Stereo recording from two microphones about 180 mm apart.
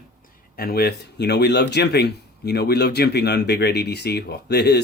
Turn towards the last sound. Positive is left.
turn(degrees=65)  # may be behind; listen again after turning